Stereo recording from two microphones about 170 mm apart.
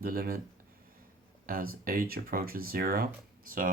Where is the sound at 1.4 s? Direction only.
60° right (ahead or behind).